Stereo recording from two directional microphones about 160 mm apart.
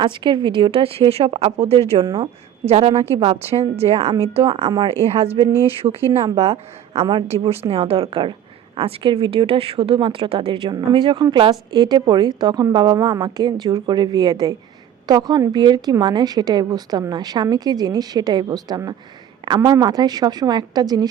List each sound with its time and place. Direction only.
0.0 s a woman's voice: 30° right (ahead or behind)